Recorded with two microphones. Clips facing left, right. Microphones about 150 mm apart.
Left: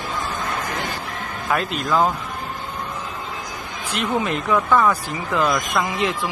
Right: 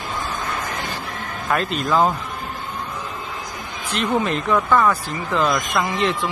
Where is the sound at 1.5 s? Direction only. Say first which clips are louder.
Right 1 dB; 5° left (ahead or behind).